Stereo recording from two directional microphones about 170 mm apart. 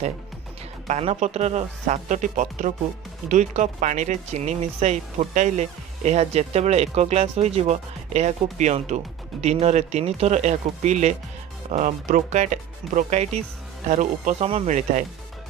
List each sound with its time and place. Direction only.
0.8 s speech: 40° right (ahead or behind)